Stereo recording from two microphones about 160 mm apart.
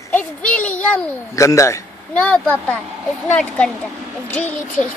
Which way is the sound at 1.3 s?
20° left (ahead or behind).